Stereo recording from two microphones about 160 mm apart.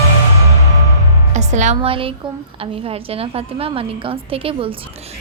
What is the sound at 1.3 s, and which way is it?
A woman's voice, 45° right (ahead or behind).